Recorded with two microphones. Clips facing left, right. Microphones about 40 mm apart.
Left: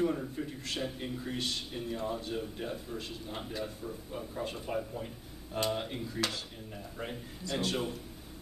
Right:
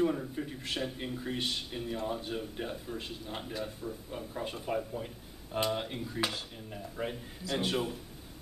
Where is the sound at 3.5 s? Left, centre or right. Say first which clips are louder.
Even; centre.